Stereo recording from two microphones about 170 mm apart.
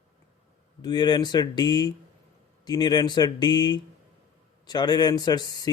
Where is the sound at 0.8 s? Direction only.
25° left (ahead or behind).